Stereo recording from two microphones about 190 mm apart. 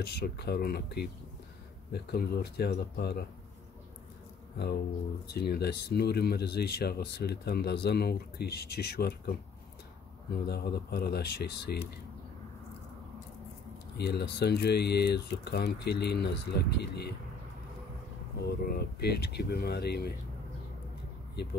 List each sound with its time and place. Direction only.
0.0 s speech: 60° left (ahead or behind)
5.3 s speech: 60° left (ahead or behind)
10.3 s speech: 60° left (ahead or behind)
13.9 s speech: 60° left (ahead or behind)
18.4 s speech: 55° left (ahead or behind)